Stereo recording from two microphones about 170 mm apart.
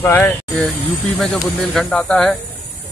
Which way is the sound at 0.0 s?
10° left (ahead or behind).